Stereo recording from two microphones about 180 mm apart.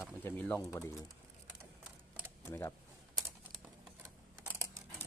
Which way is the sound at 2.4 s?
15° left (ahead or behind).